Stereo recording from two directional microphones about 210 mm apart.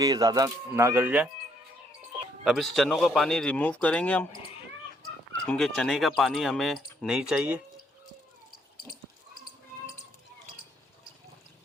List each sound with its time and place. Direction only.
0.0 s speech: 20° right (ahead or behind)
2.4 s speech: centre (ahead or behind)
5.5 s speech: centre (ahead or behind)